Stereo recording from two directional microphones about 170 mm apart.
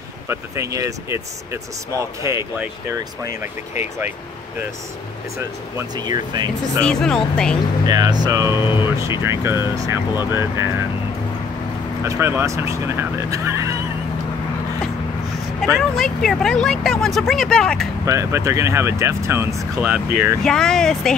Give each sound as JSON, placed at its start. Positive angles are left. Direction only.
{"t": 0.3, "sound": "speech", "side_deg": -20}
{"t": 5.9, "sound": "speech", "side_deg": -25}
{"t": 6.8, "sound": "speech", "side_deg": 5}
{"t": 7.8, "sound": "speech", "side_deg": -20}
{"t": 8.5, "sound": "speech", "side_deg": 30}
{"t": 8.8, "sound": "speech", "side_deg": -15}
{"t": 12.0, "sound": "speech", "side_deg": -15}
{"t": 15.6, "sound": "speech", "side_deg": 0}
{"t": 18.0, "sound": "speech", "side_deg": -15}
{"t": 20.4, "sound": "speech", "side_deg": 5}